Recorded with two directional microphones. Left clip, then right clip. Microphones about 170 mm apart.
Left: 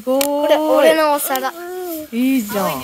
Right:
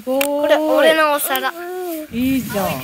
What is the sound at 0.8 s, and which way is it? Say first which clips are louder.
Speech: left 1 dB; 35° left (ahead or behind).